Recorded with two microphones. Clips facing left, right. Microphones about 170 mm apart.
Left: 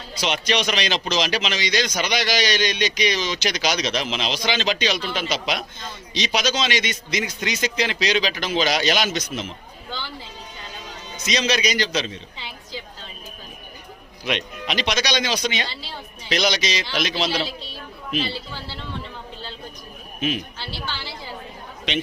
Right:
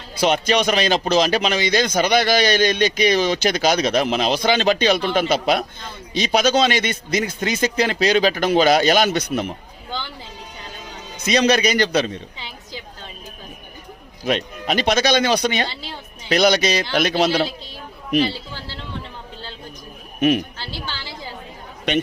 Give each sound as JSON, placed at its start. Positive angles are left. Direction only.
{"t": 0.2, "sound": "speech", "side_deg": -50}
{"t": 11.2, "sound": "a man's voice", "side_deg": -55}
{"t": 14.3, "sound": "speech", "side_deg": -40}
{"t": 20.1, "sound": "a man's voice", "side_deg": -60}